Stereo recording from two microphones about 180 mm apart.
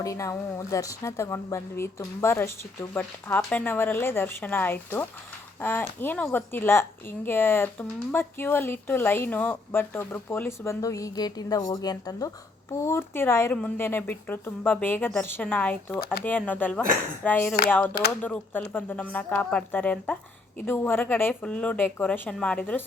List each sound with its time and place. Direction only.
0.0 s a woman's voice: 15° left (ahead or behind)